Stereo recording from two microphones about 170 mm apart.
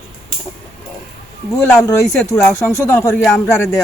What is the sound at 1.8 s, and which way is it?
Speech, 20° left (ahead or behind).